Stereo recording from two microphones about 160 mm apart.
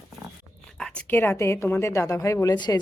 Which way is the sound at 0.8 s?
5° left (ahead or behind).